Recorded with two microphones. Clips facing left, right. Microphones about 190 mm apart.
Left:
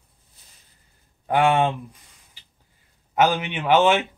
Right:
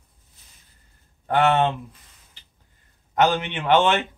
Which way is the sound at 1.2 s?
10° left (ahead or behind).